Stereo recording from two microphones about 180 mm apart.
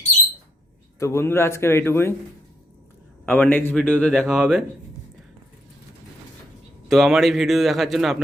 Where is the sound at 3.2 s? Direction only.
10° left (ahead or behind).